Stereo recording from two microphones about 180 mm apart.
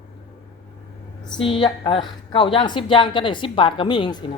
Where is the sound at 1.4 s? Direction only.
30° left (ahead or behind).